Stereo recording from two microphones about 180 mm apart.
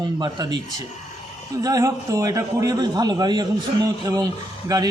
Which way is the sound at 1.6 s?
20° right (ahead or behind).